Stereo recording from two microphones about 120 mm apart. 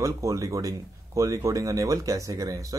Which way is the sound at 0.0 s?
25° right (ahead or behind).